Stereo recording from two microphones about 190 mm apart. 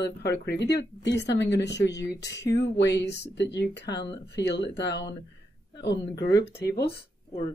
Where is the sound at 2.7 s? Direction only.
65° left (ahead or behind).